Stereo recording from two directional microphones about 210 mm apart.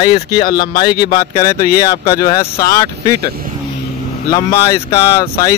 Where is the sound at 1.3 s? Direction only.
15° left (ahead or behind).